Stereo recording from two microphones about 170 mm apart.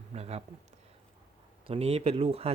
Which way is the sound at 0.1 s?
40° right (ahead or behind).